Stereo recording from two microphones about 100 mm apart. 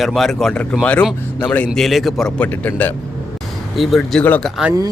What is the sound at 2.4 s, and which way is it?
Speech, 15° left (ahead or behind).